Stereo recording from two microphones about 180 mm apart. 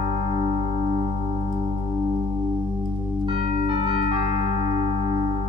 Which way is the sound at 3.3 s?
30° right (ahead or behind).